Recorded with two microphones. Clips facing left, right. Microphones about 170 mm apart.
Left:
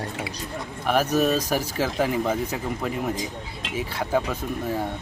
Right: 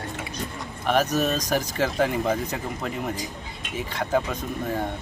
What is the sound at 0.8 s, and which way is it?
Speech, 10° left (ahead or behind).